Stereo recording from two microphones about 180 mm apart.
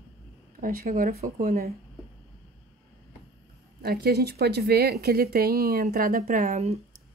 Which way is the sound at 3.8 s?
60° right (ahead or behind).